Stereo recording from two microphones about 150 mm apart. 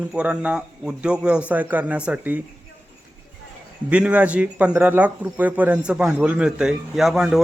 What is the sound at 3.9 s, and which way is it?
Speech, 10° right (ahead or behind).